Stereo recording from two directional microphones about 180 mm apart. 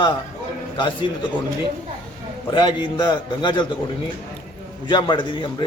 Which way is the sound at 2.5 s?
25° left (ahead or behind).